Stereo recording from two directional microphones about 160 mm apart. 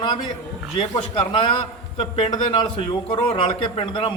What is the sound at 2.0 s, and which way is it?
A man's voice, 35° left (ahead or behind).